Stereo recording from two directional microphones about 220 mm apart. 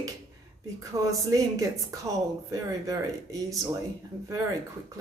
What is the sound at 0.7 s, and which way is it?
Speech, 15° right (ahead or behind).